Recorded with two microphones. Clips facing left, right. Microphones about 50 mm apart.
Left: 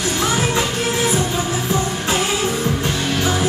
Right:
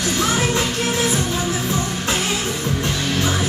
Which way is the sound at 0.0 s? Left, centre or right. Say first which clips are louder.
Even; left.